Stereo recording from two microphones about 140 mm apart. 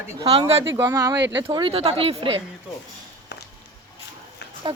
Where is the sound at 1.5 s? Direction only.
35° right (ahead or behind).